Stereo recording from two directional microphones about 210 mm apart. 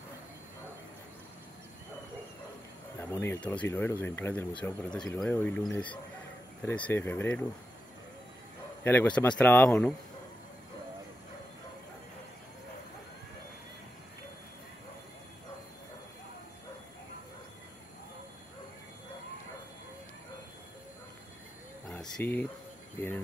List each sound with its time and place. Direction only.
3.0 s speech: 10° left (ahead or behind)
8.8 s speech: 10° left (ahead or behind)
21.8 s a sound: 5° left (ahead or behind)